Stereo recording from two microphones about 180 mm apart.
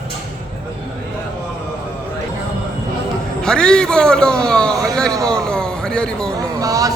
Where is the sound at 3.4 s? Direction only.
5° left (ahead or behind).